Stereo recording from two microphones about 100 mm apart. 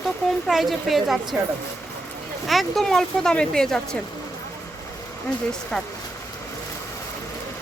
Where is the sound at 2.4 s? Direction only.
Centre (ahead or behind).